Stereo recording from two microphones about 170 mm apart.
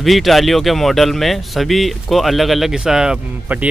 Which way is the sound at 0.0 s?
Centre (ahead or behind).